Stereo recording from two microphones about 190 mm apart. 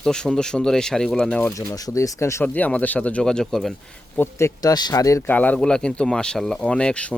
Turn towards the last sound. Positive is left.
turn(degrees=5)  # may be behind; listen again after turning